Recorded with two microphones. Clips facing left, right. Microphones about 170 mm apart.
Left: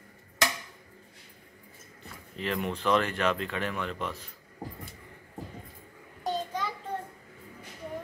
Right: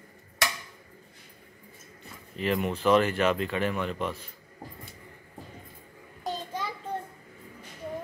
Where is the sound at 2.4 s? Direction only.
5° right (ahead or behind).